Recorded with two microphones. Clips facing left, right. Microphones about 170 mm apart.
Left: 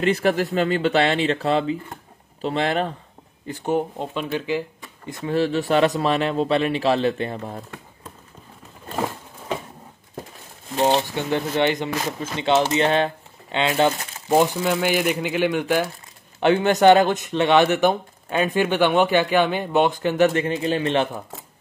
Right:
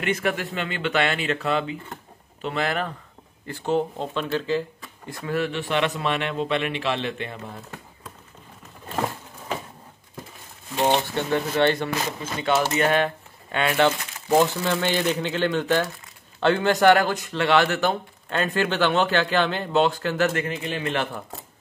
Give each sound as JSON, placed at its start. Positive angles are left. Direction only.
{"t": 0.0, "sound": "speech", "side_deg": 35}
{"t": 3.4, "sound": "speech", "side_deg": 15}
{"t": 11.0, "sound": "speech", "side_deg": 15}
{"t": 20.4, "sound": "speech", "side_deg": 30}